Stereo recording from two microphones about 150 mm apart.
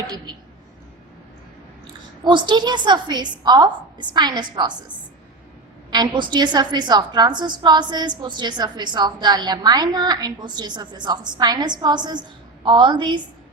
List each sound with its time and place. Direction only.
2.2 s a woman's voice: 30° right (ahead or behind)
5.9 s a woman's voice: 30° right (ahead or behind)